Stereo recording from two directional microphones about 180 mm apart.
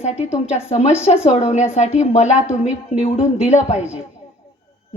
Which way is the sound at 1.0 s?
35° left (ahead or behind).